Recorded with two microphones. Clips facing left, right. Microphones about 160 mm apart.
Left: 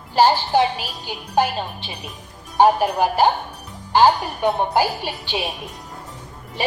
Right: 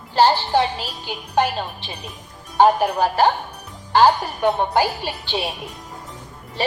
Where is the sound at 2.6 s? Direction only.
15° left (ahead or behind).